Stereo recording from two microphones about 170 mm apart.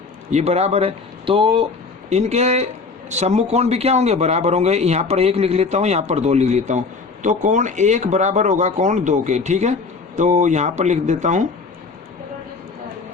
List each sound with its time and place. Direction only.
0.3 s a man's voice: 40° right (ahead or behind)